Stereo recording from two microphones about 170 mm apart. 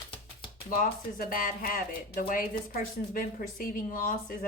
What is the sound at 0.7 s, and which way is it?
A woman's voice, 55° left (ahead or behind).